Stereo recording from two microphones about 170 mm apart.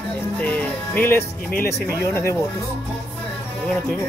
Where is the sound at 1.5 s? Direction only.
65° left (ahead or behind).